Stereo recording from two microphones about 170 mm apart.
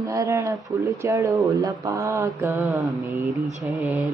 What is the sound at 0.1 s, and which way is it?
Mantra, 20° right (ahead or behind).